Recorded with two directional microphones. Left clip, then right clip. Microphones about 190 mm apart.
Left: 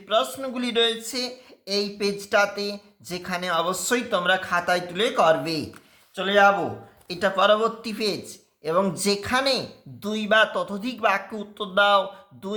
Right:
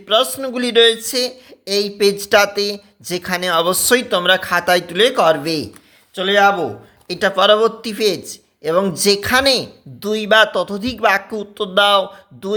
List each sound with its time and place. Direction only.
0.1 s a man's voice: 35° right (ahead or behind)